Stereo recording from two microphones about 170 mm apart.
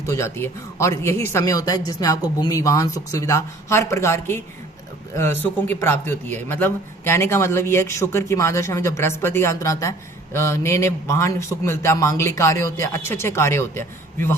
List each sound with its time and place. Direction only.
0.0 s a man's voice: 15° left (ahead or behind)